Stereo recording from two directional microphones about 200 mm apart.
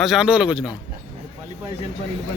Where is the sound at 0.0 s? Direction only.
Centre (ahead or behind).